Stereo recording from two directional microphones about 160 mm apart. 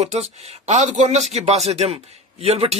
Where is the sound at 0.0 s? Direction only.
45° right (ahead or behind).